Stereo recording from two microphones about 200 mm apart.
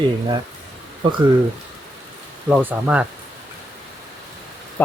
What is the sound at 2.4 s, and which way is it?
Speech, 5° right (ahead or behind).